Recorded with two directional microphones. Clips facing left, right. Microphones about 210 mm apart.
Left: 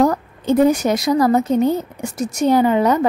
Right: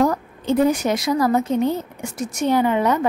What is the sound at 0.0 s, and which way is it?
A woman's voice, 40° left (ahead or behind).